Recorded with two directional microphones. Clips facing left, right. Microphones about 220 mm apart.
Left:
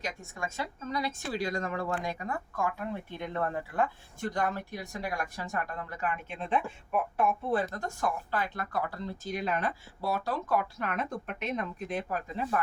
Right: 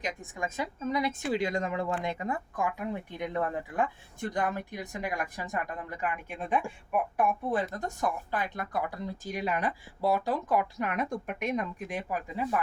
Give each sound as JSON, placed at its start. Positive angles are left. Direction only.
{"t": 0.0, "sound": "speech", "side_deg": -15}